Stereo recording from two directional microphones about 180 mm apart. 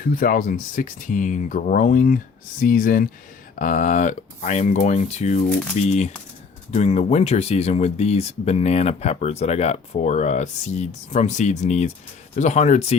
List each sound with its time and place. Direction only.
0.1 s speech: 50° left (ahead or behind)
5.5 s speech: 5° left (ahead or behind)
5.7 s speech: 40° left (ahead or behind)